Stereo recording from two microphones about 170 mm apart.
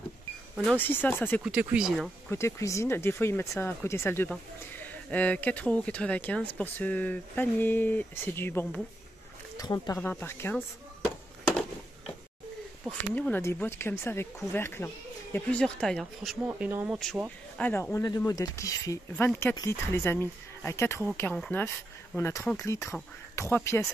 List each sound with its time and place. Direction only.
0.7 s speech: 10° left (ahead or behind)
1.4 s speech: 5° right (ahead or behind)
2.3 s speech: 15° left (ahead or behind)
13.1 s speech: 10° left (ahead or behind)
16.4 s speech: 10° right (ahead or behind)
17.6 s speech: 10° left (ahead or behind)